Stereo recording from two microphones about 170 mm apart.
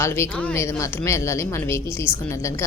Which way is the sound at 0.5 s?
15° left (ahead or behind).